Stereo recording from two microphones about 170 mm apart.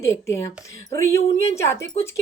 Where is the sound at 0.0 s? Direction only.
15° left (ahead or behind).